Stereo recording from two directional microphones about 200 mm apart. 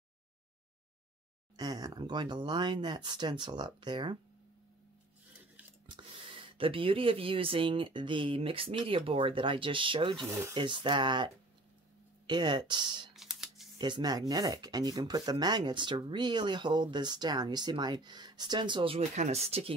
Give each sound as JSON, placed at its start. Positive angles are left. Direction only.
{"t": 1.6, "sound": "speech", "side_deg": -20}
{"t": 5.9, "sound": "speech", "side_deg": -25}
{"t": 10.2, "sound": "speech", "side_deg": -10}
{"t": 10.5, "sound": "speech", "side_deg": -25}
{"t": 12.3, "sound": "speech", "side_deg": -20}
{"t": 13.1, "sound": "typing", "side_deg": 0}
{"t": 13.7, "sound": "speech", "side_deg": -20}